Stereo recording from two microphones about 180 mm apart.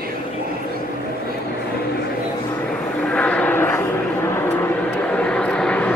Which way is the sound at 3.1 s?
5° left (ahead or behind).